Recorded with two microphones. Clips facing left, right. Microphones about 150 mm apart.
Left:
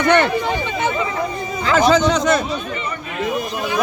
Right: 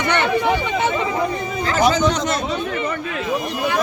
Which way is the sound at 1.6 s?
90° left.